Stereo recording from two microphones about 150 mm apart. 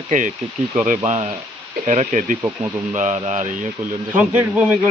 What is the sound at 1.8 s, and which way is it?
Speech, 55° right (ahead or behind).